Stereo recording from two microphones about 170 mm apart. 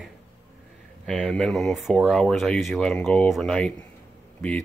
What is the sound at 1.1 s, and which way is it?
Speech, 5° left (ahead or behind).